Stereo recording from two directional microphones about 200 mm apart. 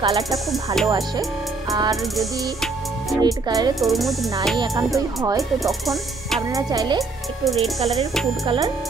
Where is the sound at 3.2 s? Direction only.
20° right (ahead or behind).